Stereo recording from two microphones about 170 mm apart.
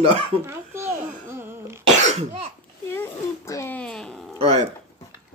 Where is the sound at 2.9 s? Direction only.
15° left (ahead or behind).